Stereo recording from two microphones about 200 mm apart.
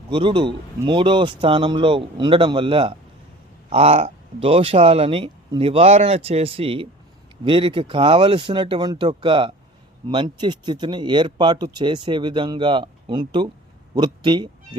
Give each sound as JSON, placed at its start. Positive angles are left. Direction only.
{"t": 0.1, "sound": "speech", "side_deg": -25}